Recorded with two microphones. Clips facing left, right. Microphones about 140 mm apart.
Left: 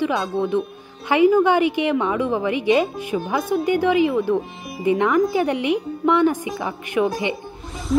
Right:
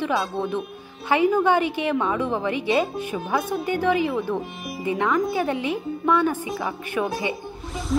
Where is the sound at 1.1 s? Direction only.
15° left (ahead or behind).